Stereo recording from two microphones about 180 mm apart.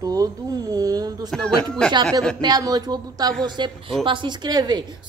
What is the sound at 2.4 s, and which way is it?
Speech, 20° right (ahead or behind).